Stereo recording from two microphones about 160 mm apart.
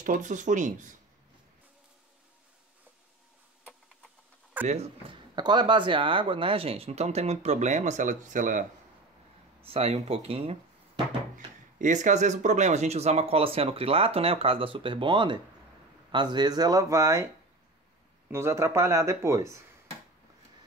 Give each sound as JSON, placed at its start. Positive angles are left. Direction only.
{"t": 0.0, "sound": "speech", "side_deg": -55}
{"t": 4.6, "sound": "a sound", "side_deg": -10}
{"t": 5.1, "sound": "speech", "side_deg": -25}
{"t": 9.6, "sound": "speech", "side_deg": -40}
{"t": 11.3, "sound": "speech", "side_deg": -50}
{"t": 18.3, "sound": "speech", "side_deg": -15}